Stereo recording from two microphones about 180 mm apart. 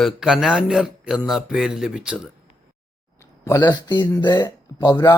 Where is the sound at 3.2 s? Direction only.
15° left (ahead or behind).